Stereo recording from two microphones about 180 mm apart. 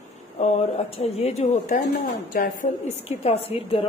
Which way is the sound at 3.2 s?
35° left (ahead or behind).